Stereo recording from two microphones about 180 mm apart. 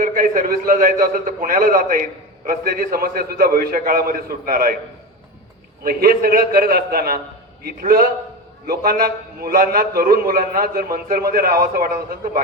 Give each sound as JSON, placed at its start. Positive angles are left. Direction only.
{"t": 0.0, "sound": "a man's voice", "side_deg": -50}
{"t": 5.8, "sound": "a man's voice", "side_deg": -55}